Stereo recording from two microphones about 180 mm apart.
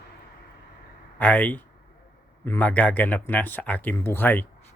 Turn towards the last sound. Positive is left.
turn(degrees=10)  # may be behind; listen again after turning